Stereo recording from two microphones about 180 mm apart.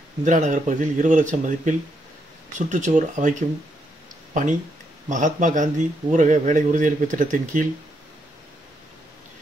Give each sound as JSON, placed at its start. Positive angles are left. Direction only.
{"t": 0.2, "sound": "a man's voice", "side_deg": -45}